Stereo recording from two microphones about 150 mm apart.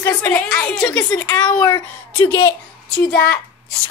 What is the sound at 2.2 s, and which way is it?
Speech, 20° left (ahead or behind).